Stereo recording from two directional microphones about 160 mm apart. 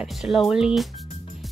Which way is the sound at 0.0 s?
Centre (ahead or behind).